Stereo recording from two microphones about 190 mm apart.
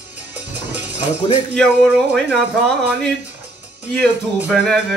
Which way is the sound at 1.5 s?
5° left (ahead or behind).